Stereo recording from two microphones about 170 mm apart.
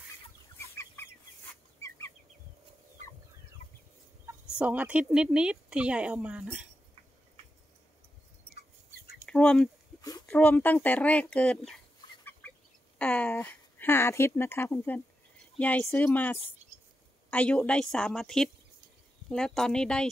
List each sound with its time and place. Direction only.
0.6 s chicken: 15° left (ahead or behind)
4.6 s speech: 10° right (ahead or behind)
9.2 s a sound: 5° left (ahead or behind)
10.2 s speech: 10° left (ahead or behind)
13.0 s a woman's voice: 10° left (ahead or behind)